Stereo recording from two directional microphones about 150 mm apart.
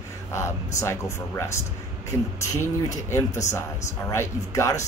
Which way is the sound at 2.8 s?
20° left (ahead or behind).